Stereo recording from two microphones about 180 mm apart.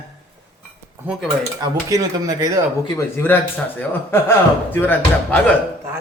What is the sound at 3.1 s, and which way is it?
Speech, 10° left (ahead or behind).